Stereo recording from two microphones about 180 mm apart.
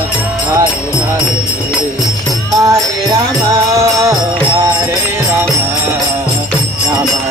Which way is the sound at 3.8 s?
20° right (ahead or behind).